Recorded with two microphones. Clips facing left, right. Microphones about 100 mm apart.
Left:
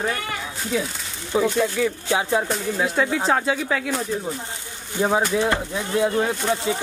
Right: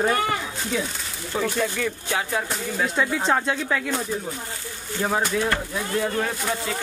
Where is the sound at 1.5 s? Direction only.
10° left (ahead or behind).